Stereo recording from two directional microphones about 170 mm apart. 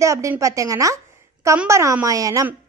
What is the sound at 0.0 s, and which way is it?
A child's voice, 15° right (ahead or behind).